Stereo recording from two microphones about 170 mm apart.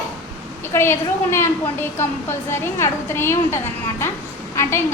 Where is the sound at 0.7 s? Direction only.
15° left (ahead or behind).